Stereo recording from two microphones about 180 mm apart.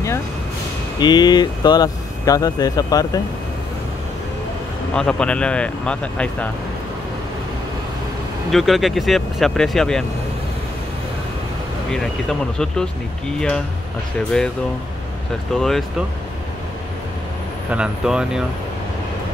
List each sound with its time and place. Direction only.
0.9 s speech: 25° left (ahead or behind)
4.9 s speech: 5° left (ahead or behind)
8.5 s speech: centre (ahead or behind)
11.9 s speech: 5° left (ahead or behind)
14.3 s speech: 5° left (ahead or behind)
15.5 s speech: 5° left (ahead or behind)
17.6 s speech: 5° right (ahead or behind)